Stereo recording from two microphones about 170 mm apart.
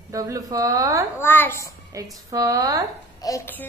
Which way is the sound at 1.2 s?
10° left (ahead or behind).